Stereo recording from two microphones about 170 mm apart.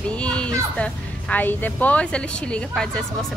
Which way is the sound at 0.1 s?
5° left (ahead or behind).